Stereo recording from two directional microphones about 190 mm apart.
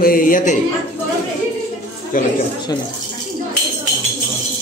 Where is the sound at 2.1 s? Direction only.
45° left (ahead or behind).